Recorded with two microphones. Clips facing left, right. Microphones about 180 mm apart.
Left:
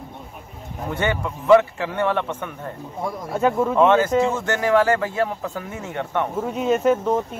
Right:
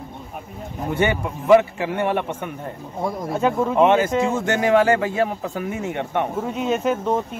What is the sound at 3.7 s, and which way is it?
A man's voice, 15° right (ahead or behind).